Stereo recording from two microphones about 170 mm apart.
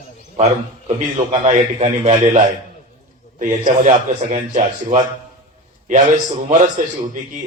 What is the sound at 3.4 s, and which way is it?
A man's voice, 45° right (ahead or behind).